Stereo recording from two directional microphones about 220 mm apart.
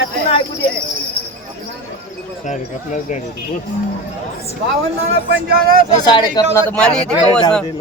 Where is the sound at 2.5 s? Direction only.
35° left (ahead or behind).